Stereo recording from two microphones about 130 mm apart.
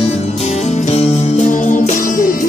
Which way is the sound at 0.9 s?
60° left (ahead or behind).